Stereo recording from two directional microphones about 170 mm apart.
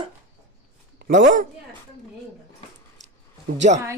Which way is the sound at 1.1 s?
50° right (ahead or behind).